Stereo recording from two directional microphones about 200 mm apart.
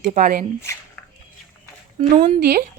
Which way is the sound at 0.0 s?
40° right (ahead or behind).